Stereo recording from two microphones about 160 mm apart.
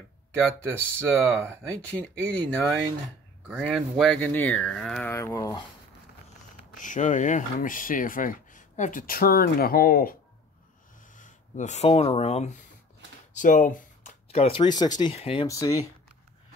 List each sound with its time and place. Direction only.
0.3 s speech: 5° left (ahead or behind)
5.1 s speech: 15° left (ahead or behind)
6.8 s speech: 50° left (ahead or behind)
11.1 s speech: 50° left (ahead or behind)
13.4 s a sound: 55° left (ahead or behind)
14.6 s speech: 25° left (ahead or behind)
15.1 s speech: 40° left (ahead or behind)
15.4 s speech: 20° left (ahead or behind)